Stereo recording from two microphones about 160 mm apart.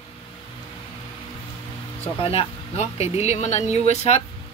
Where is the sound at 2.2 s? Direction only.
35° left (ahead or behind).